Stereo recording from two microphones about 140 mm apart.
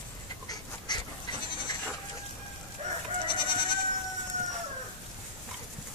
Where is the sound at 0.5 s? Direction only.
30° left (ahead or behind).